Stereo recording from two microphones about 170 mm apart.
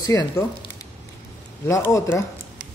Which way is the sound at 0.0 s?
20° left (ahead or behind).